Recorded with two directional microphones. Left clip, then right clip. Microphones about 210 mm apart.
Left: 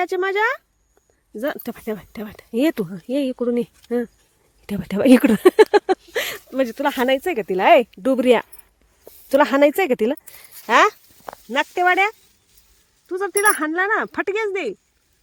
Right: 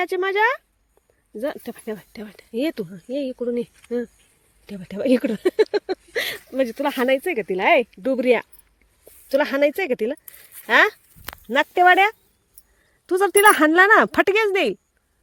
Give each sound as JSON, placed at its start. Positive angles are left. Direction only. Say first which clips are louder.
{"t": 0.0, "sound": "speech", "louder": "even", "side_deg": 0}
{"t": 1.4, "sound": "speech", "louder": "left 2 dB", "side_deg": 10}
{"t": 4.6, "sound": "speech", "louder": "left 6 dB", "side_deg": 20}
{"t": 11.4, "sound": "speech", "louder": "right 3 dB", "side_deg": -10}
{"t": 13.1, "sound": "speech", "louder": "right 4 dB", "side_deg": -40}